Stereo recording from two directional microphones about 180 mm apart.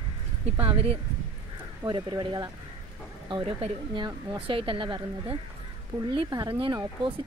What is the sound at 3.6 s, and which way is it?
A woman's voice, 30° right (ahead or behind).